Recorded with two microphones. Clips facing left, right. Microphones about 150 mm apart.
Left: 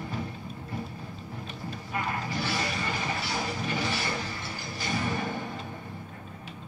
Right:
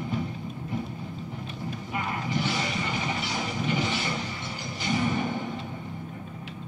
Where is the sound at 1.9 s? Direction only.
20° right (ahead or behind).